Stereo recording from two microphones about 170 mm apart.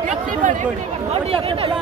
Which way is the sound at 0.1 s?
50° right (ahead or behind).